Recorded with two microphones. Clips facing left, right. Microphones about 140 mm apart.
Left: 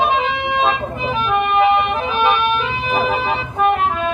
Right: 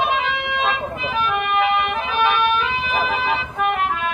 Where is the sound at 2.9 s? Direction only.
35° left (ahead or behind).